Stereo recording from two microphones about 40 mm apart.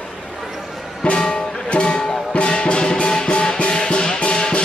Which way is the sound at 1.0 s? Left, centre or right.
Left.